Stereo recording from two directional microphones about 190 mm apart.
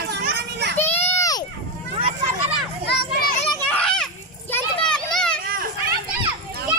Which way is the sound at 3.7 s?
5° left (ahead or behind).